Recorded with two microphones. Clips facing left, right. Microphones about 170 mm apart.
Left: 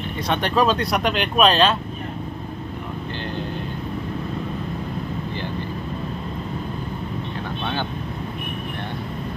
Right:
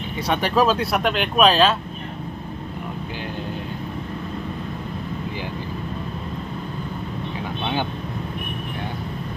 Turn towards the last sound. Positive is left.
turn(degrees=-15)  # may be behind; listen again after turning